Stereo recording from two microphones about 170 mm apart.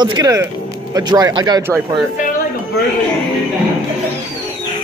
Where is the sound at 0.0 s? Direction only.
20° right (ahead or behind).